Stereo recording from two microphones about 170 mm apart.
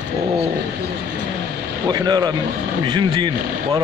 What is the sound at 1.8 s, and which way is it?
A man's voice, 25° right (ahead or behind).